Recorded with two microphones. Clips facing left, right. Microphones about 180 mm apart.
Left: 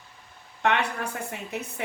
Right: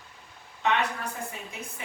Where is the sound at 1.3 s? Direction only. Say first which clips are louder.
Left 6 dB; 65° left (ahead or behind).